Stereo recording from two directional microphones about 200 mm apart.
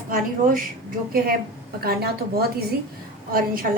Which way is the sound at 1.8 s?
50° right (ahead or behind).